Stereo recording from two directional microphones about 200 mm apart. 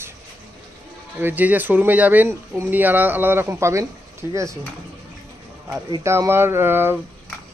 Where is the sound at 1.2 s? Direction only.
10° right (ahead or behind).